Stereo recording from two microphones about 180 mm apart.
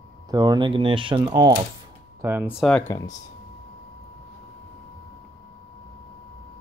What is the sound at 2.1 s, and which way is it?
Speech, 15° right (ahead or behind).